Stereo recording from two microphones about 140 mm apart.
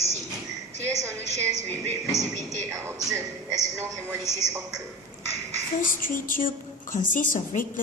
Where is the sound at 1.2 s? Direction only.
55° right (ahead or behind).